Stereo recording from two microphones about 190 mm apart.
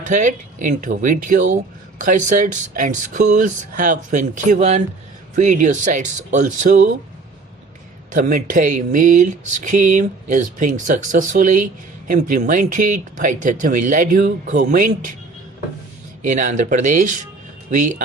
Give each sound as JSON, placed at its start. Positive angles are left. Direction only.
{"t": 0.0, "sound": "speech", "side_deg": -40}
{"t": 8.1, "sound": "speech", "side_deg": -45}
{"t": 16.2, "sound": "speech", "side_deg": -40}